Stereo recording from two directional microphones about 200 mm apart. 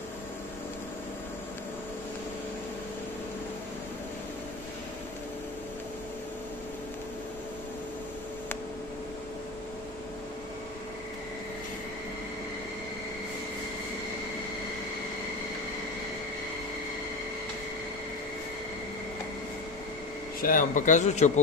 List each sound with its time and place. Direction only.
20.3 s a man's voice: 45° left (ahead or behind)